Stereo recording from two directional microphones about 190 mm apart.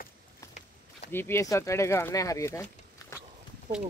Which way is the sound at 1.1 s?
10° left (ahead or behind).